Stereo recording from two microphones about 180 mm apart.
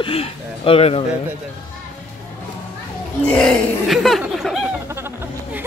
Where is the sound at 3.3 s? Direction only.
Centre (ahead or behind).